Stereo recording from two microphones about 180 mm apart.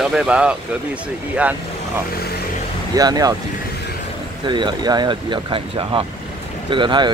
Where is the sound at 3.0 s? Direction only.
20° right (ahead or behind).